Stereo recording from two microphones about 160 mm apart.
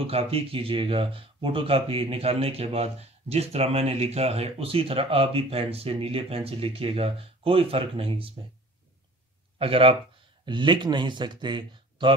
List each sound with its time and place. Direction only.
0.0 s speech: 35° right (ahead or behind)
9.6 s speech: 35° right (ahead or behind)